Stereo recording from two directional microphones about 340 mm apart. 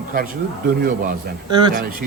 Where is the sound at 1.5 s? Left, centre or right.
Centre.